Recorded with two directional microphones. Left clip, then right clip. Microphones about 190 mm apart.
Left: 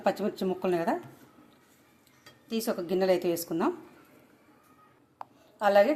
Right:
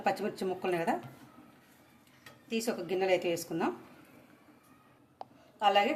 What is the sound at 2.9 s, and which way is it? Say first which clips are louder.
Speech: left 3 dB; 30° left (ahead or behind).